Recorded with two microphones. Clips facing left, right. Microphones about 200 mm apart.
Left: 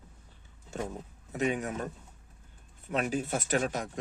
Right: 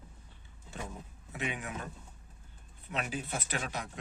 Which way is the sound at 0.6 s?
45° left (ahead or behind).